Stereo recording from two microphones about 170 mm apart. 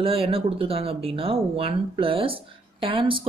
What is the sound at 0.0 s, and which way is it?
Speech, 35° right (ahead or behind).